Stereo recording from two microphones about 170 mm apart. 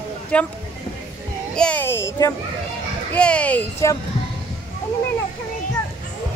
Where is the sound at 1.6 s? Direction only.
10° left (ahead or behind).